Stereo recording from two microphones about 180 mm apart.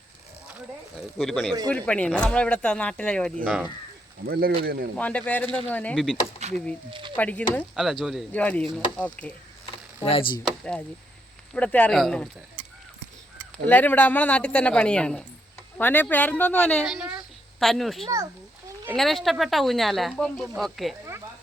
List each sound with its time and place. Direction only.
1.2 s speech: centre (ahead or behind)
3.4 s speech: 5° right (ahead or behind)
4.3 s speech: 55° right (ahead or behind)
4.9 s speech: 5° left (ahead or behind)
6.4 s a sound: 35° right (ahead or behind)
7.2 s speech: 10° left (ahead or behind)
10.0 s speech: 30° left (ahead or behind)
10.4 s speech: 5° left (ahead or behind)
13.7 s speech: 10° left (ahead or behind)
16.8 s a woman's voice: 5° right (ahead or behind)